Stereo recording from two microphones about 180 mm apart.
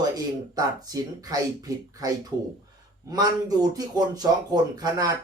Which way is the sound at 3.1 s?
20° right (ahead or behind).